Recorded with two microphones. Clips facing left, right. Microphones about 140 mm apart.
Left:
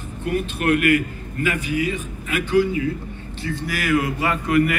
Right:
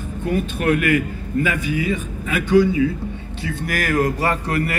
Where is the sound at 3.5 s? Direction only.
45° right (ahead or behind).